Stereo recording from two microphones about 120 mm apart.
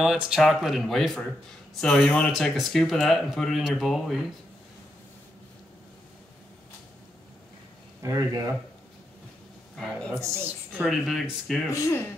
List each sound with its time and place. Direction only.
0.0 s speech: 5° right (ahead or behind)
8.0 s speech: 25° right (ahead or behind)
9.8 s speech: 5° left (ahead or behind)
10.2 s speech: 20° right (ahead or behind)
10.7 s speech: 5° right (ahead or behind)
11.7 s speech: 25° left (ahead or behind)